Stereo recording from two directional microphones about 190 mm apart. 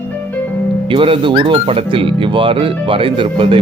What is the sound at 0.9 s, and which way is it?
Speech, 30° right (ahead or behind).